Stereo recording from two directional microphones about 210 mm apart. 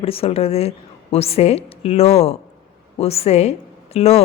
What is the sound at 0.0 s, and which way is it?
A woman's voice, 30° left (ahead or behind).